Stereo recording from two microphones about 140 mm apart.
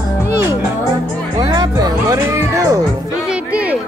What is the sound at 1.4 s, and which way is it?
Music, 30° right (ahead or behind).